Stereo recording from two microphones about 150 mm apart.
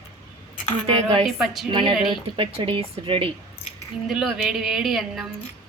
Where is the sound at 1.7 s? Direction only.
30° right (ahead or behind).